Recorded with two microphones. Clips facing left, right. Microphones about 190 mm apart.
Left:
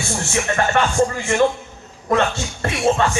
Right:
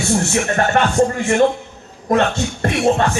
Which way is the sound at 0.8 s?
60° right (ahead or behind).